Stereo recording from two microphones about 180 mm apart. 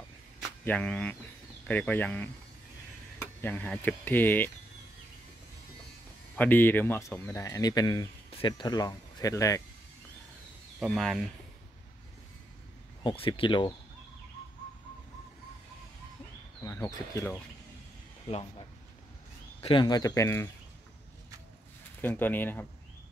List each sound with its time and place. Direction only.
0.4 s a sound: 5° left (ahead or behind)
1.7 s speech: 10° left (ahead or behind)
6.3 s speech: 10° left (ahead or behind)
10.8 s speech: centre (ahead or behind)
13.0 s speech: 30° left (ahead or behind)
16.6 s speech: 15° left (ahead or behind)
19.6 s speech: 25° left (ahead or behind)
22.0 s speech: 10° left (ahead or behind)